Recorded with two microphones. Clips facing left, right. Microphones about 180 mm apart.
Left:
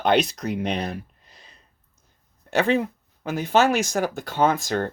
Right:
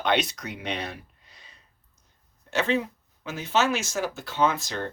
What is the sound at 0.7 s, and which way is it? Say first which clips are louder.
Speech: left 5 dB; 40° left (ahead or behind).